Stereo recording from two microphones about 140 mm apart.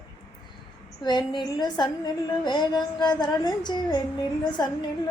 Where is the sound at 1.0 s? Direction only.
30° left (ahead or behind).